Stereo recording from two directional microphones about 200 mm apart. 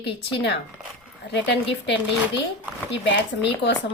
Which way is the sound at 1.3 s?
60° left (ahead or behind).